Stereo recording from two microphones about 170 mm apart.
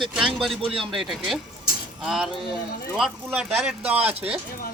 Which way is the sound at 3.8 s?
35° right (ahead or behind).